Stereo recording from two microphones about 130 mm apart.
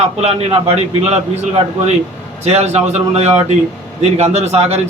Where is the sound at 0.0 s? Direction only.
50° right (ahead or behind).